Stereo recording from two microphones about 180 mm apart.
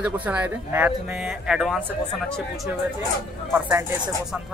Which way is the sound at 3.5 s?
15° right (ahead or behind).